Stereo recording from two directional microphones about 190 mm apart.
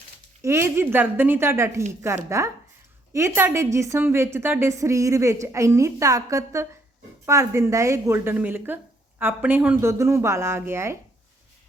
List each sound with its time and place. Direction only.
0.4 s a woman's voice: 15° right (ahead or behind)